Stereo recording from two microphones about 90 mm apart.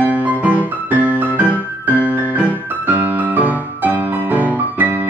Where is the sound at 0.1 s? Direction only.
15° right (ahead or behind).